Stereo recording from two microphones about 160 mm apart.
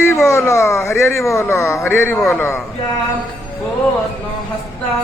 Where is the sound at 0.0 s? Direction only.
15° left (ahead or behind).